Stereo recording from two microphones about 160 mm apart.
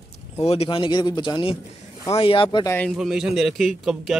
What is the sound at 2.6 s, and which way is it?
Speech, 15° left (ahead or behind).